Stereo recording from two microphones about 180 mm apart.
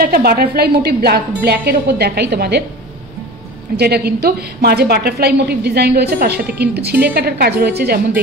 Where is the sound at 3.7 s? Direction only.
60° right (ahead or behind).